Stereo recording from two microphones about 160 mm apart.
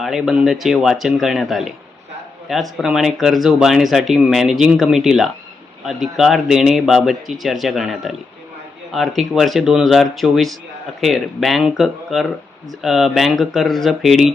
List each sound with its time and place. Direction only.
0.0 s speech: centre (ahead or behind)